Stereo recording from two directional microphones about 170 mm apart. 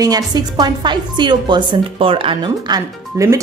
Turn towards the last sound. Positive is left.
turn(degrees=-20)  # may be behind; listen again after turning